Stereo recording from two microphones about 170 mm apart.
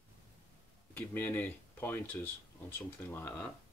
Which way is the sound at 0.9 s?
10° left (ahead or behind).